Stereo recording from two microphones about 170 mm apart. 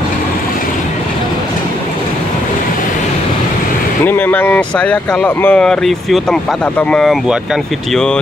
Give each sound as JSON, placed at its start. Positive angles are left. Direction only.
{"t": 4.0, "sound": "speech", "side_deg": 10}